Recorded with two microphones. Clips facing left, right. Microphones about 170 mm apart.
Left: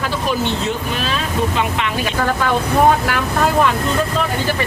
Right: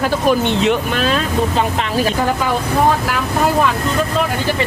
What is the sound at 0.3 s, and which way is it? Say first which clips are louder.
Speech: right 6 dB; 65° right (ahead or behind).